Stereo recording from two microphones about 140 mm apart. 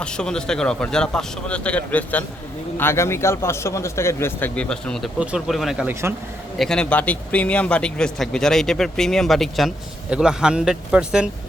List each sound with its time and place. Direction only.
0.0 s speech: 5° left (ahead or behind)
5.9 s speech: 15° right (ahead or behind)
6.6 s speech: 5° left (ahead or behind)